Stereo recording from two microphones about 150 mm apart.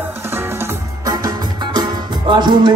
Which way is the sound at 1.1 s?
25° right (ahead or behind).